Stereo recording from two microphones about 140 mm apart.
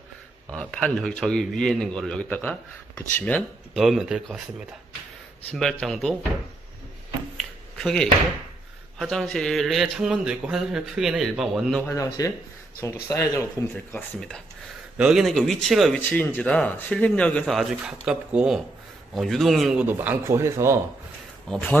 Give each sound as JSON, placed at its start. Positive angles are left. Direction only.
{"t": 0.8, "sound": "a man's voice", "side_deg": 5}
{"t": 3.7, "sound": "a man's voice", "side_deg": 0}
{"t": 7.3, "sound": "a sound", "side_deg": 5}
{"t": 8.9, "sound": "a man's voice", "side_deg": 0}
{"t": 11.9, "sound": "speech", "side_deg": 25}
{"t": 13.9, "sound": "speech", "side_deg": 5}
{"t": 15.0, "sound": "a man's voice", "side_deg": -5}
{"t": 16.0, "sound": "speech", "side_deg": 15}
{"t": 21.5, "sound": "a man's voice", "side_deg": 5}